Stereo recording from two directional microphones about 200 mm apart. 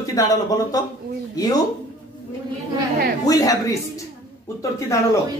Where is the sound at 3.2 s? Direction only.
20° left (ahead or behind).